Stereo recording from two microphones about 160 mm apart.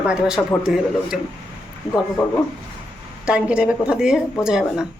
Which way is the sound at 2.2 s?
5° left (ahead or behind).